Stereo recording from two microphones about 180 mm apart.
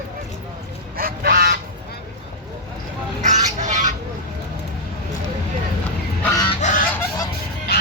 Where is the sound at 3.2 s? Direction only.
40° right (ahead or behind).